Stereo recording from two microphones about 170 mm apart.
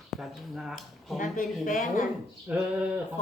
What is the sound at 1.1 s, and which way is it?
Speech, 50° left (ahead or behind).